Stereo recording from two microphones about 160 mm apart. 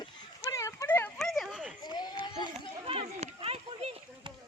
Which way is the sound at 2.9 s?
35° right (ahead or behind).